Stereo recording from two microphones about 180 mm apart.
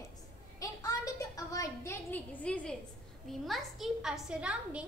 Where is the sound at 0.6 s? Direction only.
20° left (ahead or behind).